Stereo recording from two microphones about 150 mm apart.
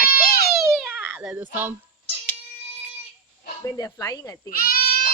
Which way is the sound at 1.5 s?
15° right (ahead or behind).